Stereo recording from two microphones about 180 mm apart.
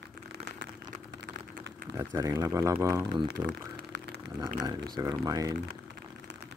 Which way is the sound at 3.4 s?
70° right (ahead or behind).